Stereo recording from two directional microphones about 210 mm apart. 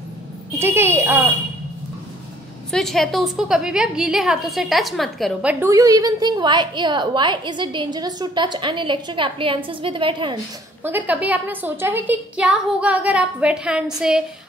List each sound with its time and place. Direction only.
0.6 s a woman's voice: 10° right (ahead or behind)
2.7 s a woman's voice: centre (ahead or behind); by 10.4 s 20° right (ahead or behind)
10.8 s a woman's voice: 10° right (ahead or behind)